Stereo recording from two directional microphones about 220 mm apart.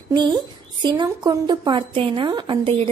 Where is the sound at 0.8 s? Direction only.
20° right (ahead or behind).